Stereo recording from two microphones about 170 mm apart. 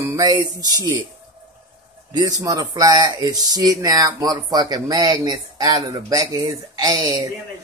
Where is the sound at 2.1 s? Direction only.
20° right (ahead or behind).